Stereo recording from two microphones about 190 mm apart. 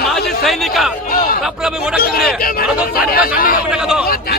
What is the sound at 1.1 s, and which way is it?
Speech, 50° left (ahead or behind).